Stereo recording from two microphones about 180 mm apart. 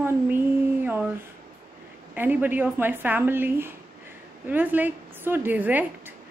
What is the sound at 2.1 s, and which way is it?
A woman's voice, 10° right (ahead or behind).